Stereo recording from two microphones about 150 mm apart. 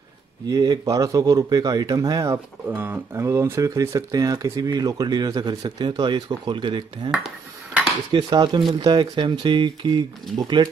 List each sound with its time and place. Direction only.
0.5 s speech: 25° right (ahead or behind)
7.1 s dishes: 5° right (ahead or behind)
8.1 s speech: 30° right (ahead or behind)